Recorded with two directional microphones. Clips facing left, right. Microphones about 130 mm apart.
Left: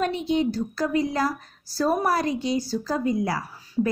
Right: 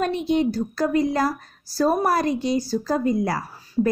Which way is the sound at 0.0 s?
50° right (ahead or behind).